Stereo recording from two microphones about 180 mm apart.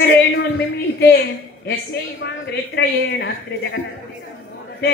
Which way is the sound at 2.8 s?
75° left (ahead or behind).